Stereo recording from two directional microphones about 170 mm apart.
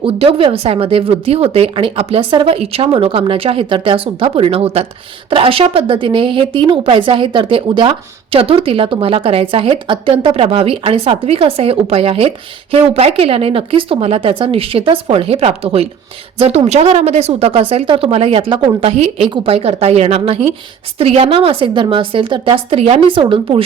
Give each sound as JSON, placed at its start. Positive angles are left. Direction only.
{"t": 0.0, "sound": "a woman's voice", "side_deg": -35}